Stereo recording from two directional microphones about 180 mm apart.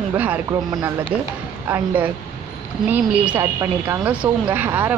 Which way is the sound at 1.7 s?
10° right (ahead or behind).